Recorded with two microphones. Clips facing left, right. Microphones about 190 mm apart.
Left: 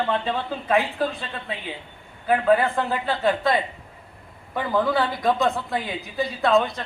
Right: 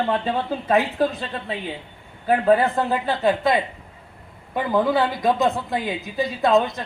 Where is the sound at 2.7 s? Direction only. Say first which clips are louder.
Right 2 dB; 20° right (ahead or behind).